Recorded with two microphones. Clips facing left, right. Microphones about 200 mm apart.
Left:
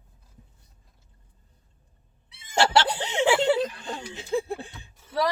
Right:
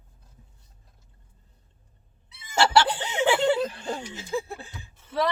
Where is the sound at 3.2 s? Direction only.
5° left (ahead or behind).